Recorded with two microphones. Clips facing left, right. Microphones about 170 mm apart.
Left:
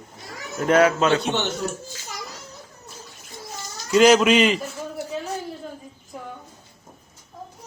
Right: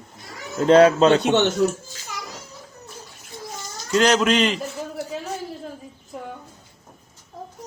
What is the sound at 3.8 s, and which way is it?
Speech, 5° left (ahead or behind).